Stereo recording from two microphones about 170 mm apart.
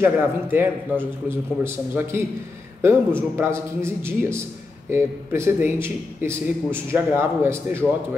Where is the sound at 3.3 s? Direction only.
15° right (ahead or behind).